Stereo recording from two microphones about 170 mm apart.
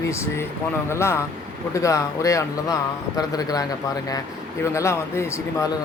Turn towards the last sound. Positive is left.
turn(degrees=15)  # may be behind; listen again after turning